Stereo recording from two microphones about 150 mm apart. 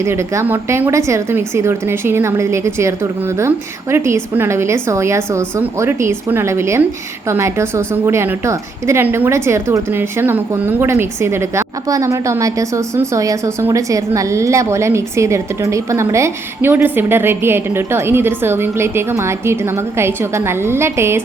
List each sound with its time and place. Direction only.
0.0 s a woman's voice: 20° right (ahead or behind)